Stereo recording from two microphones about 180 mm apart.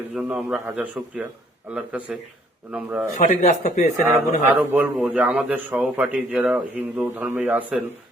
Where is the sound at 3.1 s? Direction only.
45° left (ahead or behind).